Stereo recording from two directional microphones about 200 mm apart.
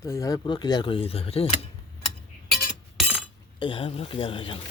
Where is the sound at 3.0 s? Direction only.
5° right (ahead or behind).